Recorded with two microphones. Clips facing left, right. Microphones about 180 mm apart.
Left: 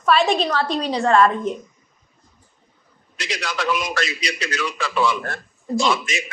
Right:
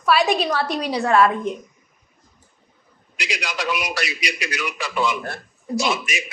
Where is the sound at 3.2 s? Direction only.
15° right (ahead or behind).